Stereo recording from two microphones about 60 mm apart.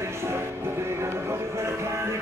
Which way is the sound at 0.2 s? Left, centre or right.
Right.